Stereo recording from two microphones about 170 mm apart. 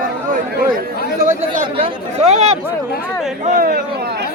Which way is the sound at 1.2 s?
45° right (ahead or behind).